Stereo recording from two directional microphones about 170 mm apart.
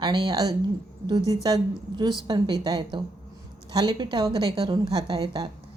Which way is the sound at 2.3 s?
25° right (ahead or behind).